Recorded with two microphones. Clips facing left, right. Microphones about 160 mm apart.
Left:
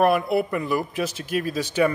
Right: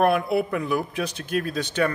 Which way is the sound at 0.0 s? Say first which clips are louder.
Left 1 dB; centre (ahead or behind).